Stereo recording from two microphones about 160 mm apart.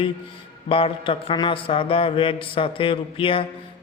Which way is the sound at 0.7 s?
35° left (ahead or behind).